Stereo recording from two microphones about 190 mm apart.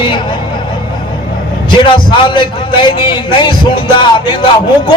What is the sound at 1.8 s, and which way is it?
A man's voice, 25° left (ahead or behind).